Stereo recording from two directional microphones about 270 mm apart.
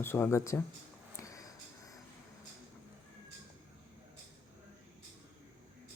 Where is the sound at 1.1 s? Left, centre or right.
Centre.